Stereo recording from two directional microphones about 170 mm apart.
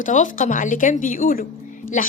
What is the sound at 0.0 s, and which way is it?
A woman's voice, 50° left (ahead or behind).